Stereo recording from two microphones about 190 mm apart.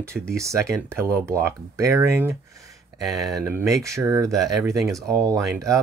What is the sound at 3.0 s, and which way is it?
Speech, centre (ahead or behind).